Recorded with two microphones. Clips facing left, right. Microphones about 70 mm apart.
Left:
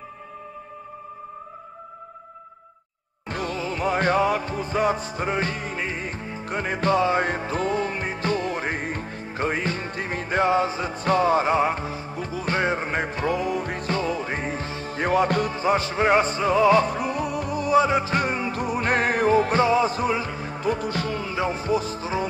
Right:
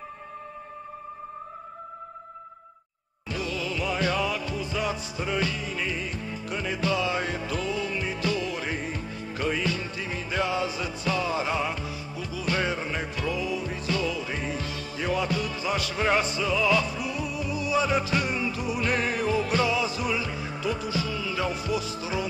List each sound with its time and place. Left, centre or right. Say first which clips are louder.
3.3 s music: left 3 dB; left
15.0 s music: left 6 dB; left
15.5 s music: left 6 dB; left
17.8 s music: left 4 dB; left
21.3 s music: left 6 dB; left